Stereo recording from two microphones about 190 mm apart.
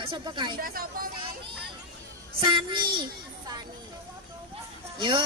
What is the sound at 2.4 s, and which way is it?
Speech, 25° right (ahead or behind).